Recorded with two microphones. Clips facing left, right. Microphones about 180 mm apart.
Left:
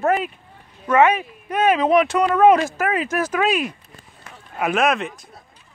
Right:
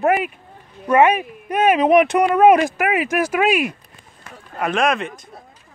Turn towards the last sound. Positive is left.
turn(degrees=5)  # may be behind; listen again after turning